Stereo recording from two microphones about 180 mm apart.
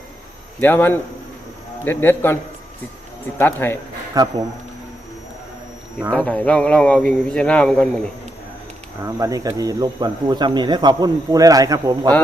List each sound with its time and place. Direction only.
0.6 s a man's voice: 10° left (ahead or behind)
4.1 s speech: 20° right (ahead or behind)
6.1 s a man's voice: 10° left (ahead or behind)
9.0 s speech: 20° right (ahead or behind)